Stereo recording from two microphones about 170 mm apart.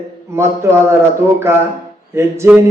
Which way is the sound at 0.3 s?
15° right (ahead or behind).